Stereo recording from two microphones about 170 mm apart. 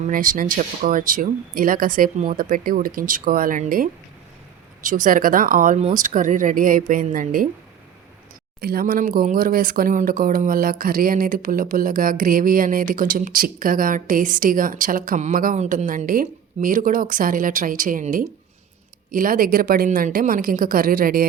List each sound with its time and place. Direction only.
0.1 s speech: 55° right (ahead or behind)
8.6 s speech: 60° right (ahead or behind)